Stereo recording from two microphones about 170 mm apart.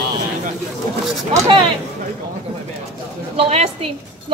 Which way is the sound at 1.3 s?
20° right (ahead or behind).